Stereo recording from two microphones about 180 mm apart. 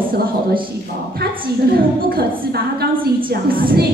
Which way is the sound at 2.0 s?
55° right (ahead or behind).